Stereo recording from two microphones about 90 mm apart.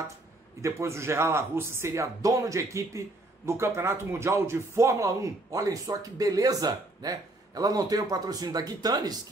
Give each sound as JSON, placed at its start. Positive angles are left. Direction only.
{"t": 0.6, "sound": "speech", "side_deg": -35}